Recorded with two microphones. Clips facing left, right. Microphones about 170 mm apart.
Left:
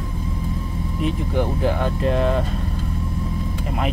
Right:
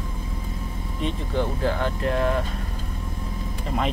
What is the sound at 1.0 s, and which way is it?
Speech, 15° left (ahead or behind).